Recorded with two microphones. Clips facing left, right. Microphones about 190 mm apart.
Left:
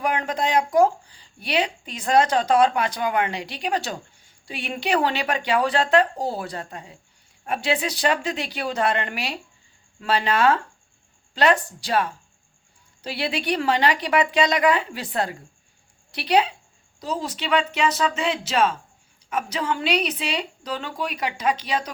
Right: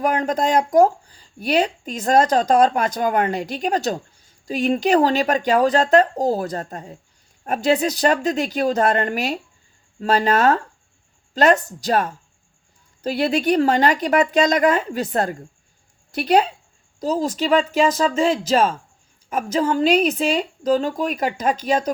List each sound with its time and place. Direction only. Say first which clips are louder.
0.0 s a woman's voice: right 4 dB; 40° right (ahead or behind)